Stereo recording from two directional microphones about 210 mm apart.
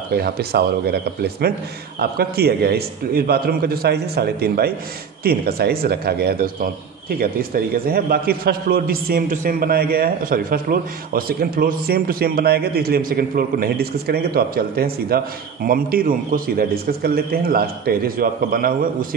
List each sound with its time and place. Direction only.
0.1 s a man's voice: 50° right (ahead or behind)